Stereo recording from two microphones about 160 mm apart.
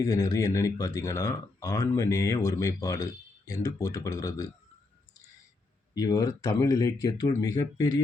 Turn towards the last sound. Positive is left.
turn(degrees=20)  # may be behind; listen again after turning